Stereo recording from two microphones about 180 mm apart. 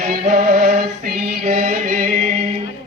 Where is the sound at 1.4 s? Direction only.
45° right (ahead or behind).